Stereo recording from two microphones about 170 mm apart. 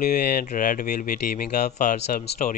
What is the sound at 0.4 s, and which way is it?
Speech, 55° left (ahead or behind).